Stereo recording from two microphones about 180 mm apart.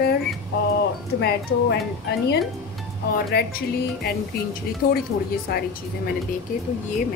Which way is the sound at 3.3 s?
60° left (ahead or behind).